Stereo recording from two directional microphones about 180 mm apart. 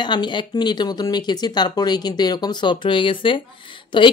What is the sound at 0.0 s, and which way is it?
Speech, 25° left (ahead or behind).